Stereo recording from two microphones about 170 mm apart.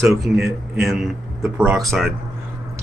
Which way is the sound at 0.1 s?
Centre (ahead or behind).